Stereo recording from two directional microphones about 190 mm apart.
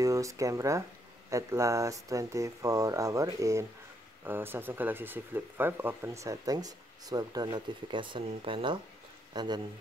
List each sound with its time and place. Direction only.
0.0 s speech: 15° right (ahead or behind)